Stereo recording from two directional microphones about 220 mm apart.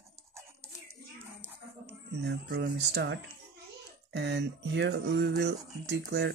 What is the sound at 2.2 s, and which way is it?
Speech, 50° right (ahead or behind).